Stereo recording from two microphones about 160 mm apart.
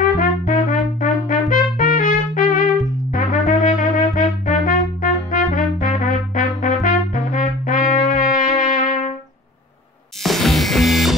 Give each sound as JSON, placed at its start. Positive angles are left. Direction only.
{"t": 0.2, "sound": "trumpet", "side_deg": 55}
{"t": 10.2, "sound": "music", "side_deg": 0}